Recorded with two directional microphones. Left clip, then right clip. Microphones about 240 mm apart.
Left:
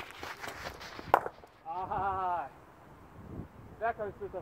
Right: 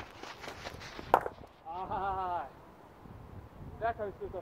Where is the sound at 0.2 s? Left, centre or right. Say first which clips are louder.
Left 4 dB; left.